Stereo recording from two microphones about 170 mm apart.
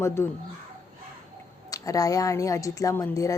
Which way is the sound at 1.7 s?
20° left (ahead or behind).